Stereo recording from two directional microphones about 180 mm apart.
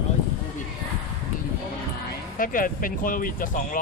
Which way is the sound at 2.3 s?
50° left (ahead or behind).